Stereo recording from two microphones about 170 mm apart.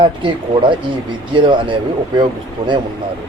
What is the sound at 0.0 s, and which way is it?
A man's voice, 30° right (ahead or behind).